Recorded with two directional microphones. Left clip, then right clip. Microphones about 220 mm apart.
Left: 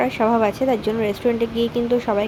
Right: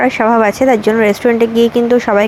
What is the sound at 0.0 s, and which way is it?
A woman's voice, 20° right (ahead or behind).